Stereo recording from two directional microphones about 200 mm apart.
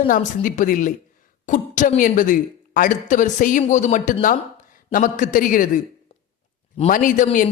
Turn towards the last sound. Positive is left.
turn(degrees=40)  # may be behind; listen again after turning